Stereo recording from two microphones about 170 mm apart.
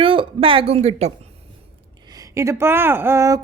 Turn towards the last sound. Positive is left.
turn(degrees=-20)  # may be behind; listen again after turning